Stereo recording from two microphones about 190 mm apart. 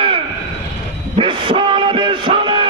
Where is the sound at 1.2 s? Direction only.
25° right (ahead or behind).